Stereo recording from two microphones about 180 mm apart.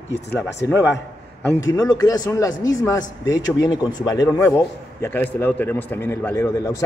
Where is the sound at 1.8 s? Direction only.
20° left (ahead or behind).